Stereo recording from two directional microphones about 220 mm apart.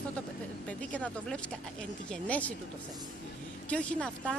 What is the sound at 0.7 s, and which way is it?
Speech, 5° left (ahead or behind).